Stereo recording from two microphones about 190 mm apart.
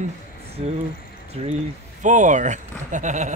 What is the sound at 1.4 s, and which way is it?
Speech, 35° right (ahead or behind).